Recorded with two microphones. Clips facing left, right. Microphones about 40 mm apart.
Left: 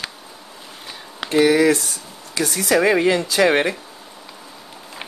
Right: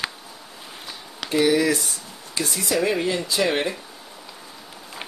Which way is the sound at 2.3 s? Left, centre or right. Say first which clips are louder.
Left 5 dB; left.